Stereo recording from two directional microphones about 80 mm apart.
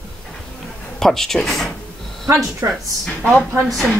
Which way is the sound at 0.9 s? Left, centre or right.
Centre.